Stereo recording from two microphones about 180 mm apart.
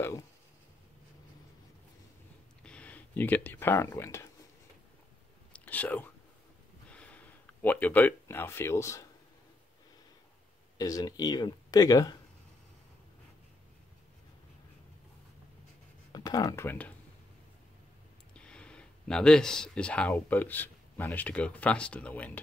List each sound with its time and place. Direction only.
2.6 s speech: 5° left (ahead or behind)
5.5 s whispering: 10° left (ahead or behind)
6.9 s speech: 5° left (ahead or behind)
10.8 s speech: 20° left (ahead or behind)
16.1 s speech: 20° left (ahead or behind)
18.3 s speech: 5° left (ahead or behind)